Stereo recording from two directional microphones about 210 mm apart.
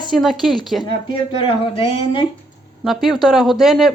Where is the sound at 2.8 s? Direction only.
Centre (ahead or behind).